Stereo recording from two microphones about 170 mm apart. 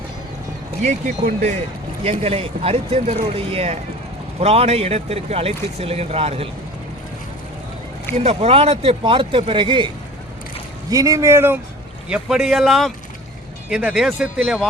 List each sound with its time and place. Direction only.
0.8 s speech: 45° right (ahead or behind)
8.1 s speech: 40° right (ahead or behind); by 14.7 s 5° right (ahead or behind)